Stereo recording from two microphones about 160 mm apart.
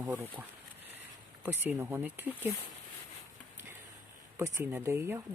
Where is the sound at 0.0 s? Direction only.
15° right (ahead or behind).